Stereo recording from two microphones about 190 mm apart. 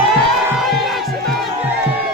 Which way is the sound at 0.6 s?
Centre (ahead or behind).